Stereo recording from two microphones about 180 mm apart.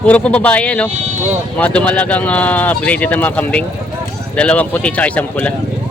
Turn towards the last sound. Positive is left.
turn(degrees=5)  # may be behind; listen again after turning